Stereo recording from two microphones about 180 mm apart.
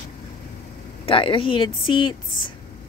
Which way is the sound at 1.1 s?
30° left (ahead or behind).